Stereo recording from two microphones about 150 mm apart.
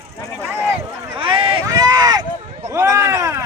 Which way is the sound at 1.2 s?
35° right (ahead or behind).